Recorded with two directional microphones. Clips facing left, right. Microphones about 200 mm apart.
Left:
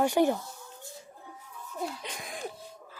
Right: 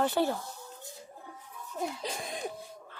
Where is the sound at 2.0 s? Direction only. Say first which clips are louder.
Right 4 dB; 30° right (ahead or behind).